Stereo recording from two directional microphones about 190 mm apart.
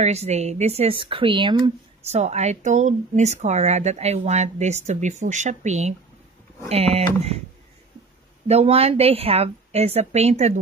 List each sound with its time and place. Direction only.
0.0 s speech: 35° right (ahead or behind)
2.0 s speech: 35° right (ahead or behind)
8.5 s speech: 35° right (ahead or behind)